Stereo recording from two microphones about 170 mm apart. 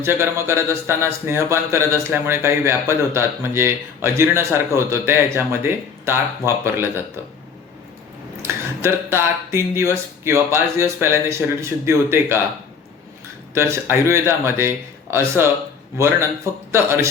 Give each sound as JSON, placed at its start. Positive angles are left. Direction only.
{"t": 0.0, "sound": "speech", "side_deg": -15}
{"t": 8.4, "sound": "speech", "side_deg": -15}
{"t": 13.5, "sound": "speech", "side_deg": -15}